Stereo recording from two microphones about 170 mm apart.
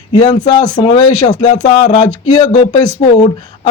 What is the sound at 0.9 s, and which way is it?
Speech, 25° left (ahead or behind).